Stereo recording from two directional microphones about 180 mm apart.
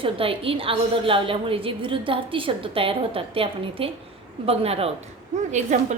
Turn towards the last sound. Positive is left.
turn(degrees=-40)  # may be behind; listen again after turning